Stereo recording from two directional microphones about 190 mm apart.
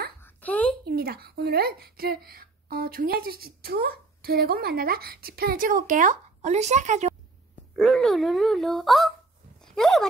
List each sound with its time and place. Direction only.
0.2 s a sound: 10° left (ahead or behind)
0.8 s speech: 55° right (ahead or behind); by 7.2 s 35° right (ahead or behind)
7.7 s speech: centre (ahead or behind)
9.6 s dog: centre (ahead or behind)